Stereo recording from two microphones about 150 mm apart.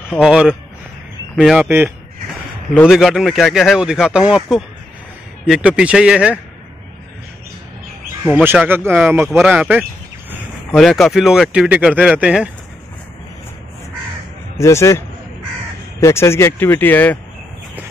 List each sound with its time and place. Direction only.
0.1 s speech: 5° right (ahead or behind)
2.9 s a man's voice: centre (ahead or behind)
8.5 s a man's voice: 15° right (ahead or behind)
10.8 s speech: centre (ahead or behind)
14.6 s speech: 20° left (ahead or behind)